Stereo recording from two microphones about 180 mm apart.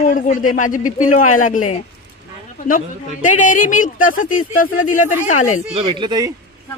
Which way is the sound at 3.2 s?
45° left (ahead or behind).